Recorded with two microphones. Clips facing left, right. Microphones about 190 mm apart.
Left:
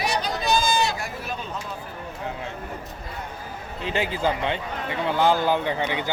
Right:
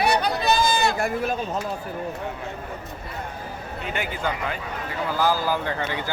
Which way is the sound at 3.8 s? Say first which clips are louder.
Left 4 dB; 30° left (ahead or behind).